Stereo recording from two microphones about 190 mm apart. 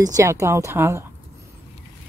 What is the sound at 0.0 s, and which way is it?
A woman's voice, 15° right (ahead or behind).